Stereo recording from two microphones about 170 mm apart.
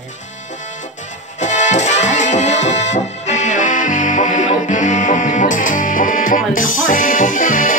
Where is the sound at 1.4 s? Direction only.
45° left (ahead or behind).